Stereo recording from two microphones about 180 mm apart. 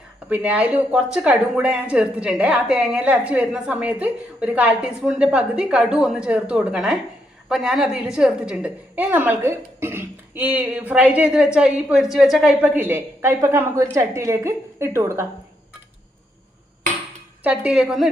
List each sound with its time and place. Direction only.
0.3 s a woman's voice: 10° right (ahead or behind)
17.4 s a woman's voice: 5° right (ahead or behind)